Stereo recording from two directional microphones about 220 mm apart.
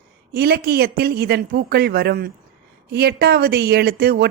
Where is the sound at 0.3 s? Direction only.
45° right (ahead or behind).